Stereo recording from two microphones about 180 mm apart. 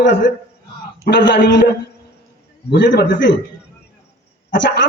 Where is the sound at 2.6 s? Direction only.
60° left (ahead or behind).